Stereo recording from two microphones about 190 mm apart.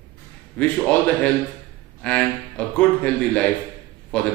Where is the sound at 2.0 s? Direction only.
5° left (ahead or behind).